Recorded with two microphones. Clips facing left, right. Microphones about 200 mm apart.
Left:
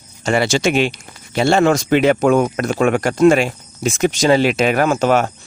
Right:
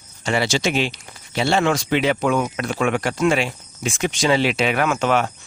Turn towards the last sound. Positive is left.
turn(degrees=40)  # may be behind; listen again after turning